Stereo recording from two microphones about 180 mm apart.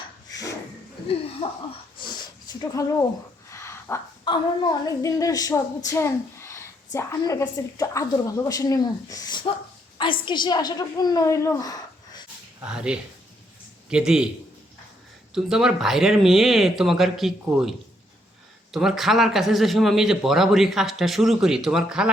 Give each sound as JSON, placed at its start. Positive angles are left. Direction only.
{"t": 0.3, "sound": "a sound", "side_deg": 20}
{"t": 1.4, "sound": "speech", "side_deg": 30}
{"t": 2.0, "sound": "sniff", "side_deg": 25}
{"t": 3.5, "sound": "a sound", "side_deg": 15}
{"t": 4.3, "sound": "a woman's voice", "side_deg": 20}
{"t": 12.6, "sound": "speech", "side_deg": -5}
{"t": 15.4, "sound": "speech", "side_deg": -5}